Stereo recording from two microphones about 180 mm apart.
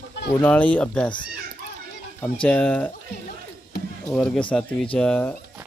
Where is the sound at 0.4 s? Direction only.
10° left (ahead or behind).